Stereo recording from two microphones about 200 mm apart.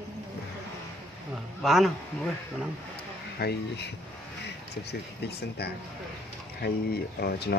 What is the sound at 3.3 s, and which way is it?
Speech, 55° left (ahead or behind).